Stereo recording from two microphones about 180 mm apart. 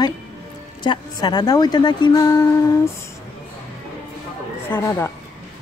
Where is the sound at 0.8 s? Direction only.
20° left (ahead or behind).